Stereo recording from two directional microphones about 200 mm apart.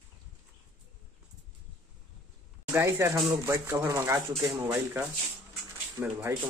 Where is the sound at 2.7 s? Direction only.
15° right (ahead or behind).